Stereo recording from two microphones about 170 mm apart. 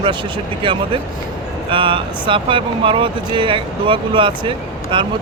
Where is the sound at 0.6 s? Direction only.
30° right (ahead or behind).